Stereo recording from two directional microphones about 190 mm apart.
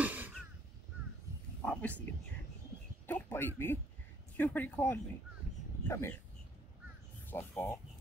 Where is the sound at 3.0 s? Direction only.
10° left (ahead or behind).